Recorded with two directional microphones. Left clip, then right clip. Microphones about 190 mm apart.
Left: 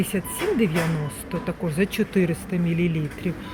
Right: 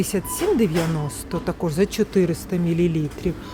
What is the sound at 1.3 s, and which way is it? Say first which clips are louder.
Speech: right 4 dB; 30° right (ahead or behind).